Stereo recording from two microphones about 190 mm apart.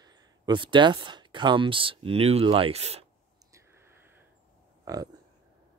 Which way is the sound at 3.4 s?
15° right (ahead or behind).